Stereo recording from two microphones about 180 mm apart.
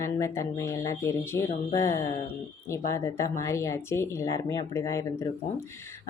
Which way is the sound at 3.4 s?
15° left (ahead or behind).